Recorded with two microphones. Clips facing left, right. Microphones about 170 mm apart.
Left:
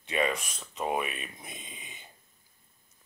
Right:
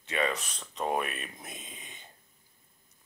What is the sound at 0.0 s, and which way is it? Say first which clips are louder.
Speech: left 2 dB; 15° left (ahead or behind).